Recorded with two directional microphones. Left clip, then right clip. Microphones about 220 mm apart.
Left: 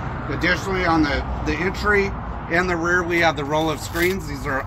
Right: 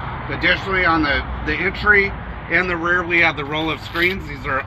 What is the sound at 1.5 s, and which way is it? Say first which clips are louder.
Speech: right 5 dB; 35° left (ahead or behind).